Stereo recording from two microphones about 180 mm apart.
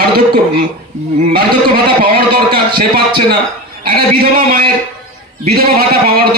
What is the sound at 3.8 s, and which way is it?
A man's voice, 55° right (ahead or behind).